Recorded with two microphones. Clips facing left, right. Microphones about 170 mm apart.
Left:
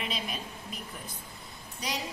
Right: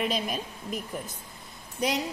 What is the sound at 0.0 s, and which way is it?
Speech, 45° right (ahead or behind).